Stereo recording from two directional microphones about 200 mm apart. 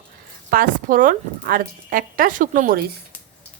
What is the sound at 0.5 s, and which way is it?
Speech, 45° right (ahead or behind).